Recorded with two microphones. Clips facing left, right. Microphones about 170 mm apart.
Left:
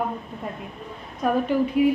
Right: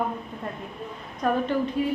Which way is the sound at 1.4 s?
10° left (ahead or behind).